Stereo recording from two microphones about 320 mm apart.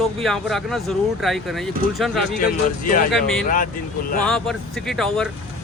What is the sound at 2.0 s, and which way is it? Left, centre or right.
Speech, centre.